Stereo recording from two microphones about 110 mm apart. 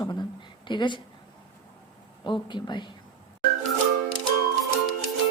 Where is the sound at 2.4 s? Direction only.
45° left (ahead or behind).